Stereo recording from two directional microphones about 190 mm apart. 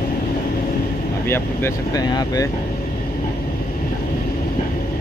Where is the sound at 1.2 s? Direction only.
10° left (ahead or behind).